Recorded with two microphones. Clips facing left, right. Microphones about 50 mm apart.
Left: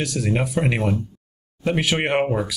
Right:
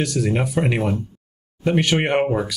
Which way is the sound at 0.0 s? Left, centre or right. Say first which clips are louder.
Right 2 dB; centre.